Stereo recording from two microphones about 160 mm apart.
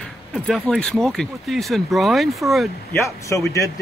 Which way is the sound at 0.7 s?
5° left (ahead or behind).